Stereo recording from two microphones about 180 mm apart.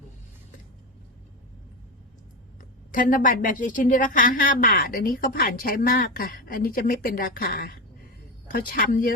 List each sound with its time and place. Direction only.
2.9 s a woman's voice: 50° left (ahead or behind)